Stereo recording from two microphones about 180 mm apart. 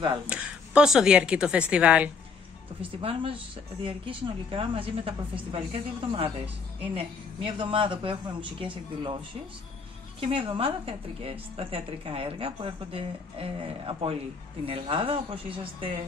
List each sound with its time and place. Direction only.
0.3 s a woman's voice: 5° right (ahead or behind)
3.0 s a woman's voice: 30° right (ahead or behind)
7.5 s speech: 30° right (ahead or behind)
10.2 s a woman's voice: 30° right (ahead or behind)